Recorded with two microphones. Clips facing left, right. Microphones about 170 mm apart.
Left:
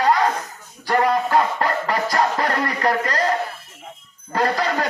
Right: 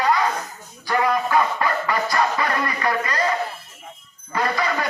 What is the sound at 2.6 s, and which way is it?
Speech, 40° left (ahead or behind).